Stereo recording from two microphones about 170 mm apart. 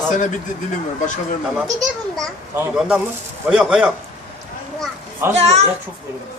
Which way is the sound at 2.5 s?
10° right (ahead or behind).